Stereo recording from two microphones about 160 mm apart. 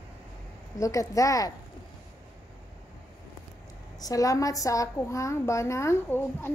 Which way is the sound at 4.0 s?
20° left (ahead or behind).